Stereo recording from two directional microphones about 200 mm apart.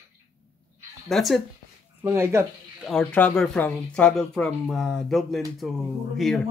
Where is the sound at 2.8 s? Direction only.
5° left (ahead or behind).